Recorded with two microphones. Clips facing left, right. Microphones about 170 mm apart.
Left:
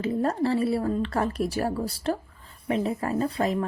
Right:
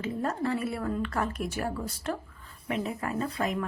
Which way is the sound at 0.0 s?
35° left (ahead or behind).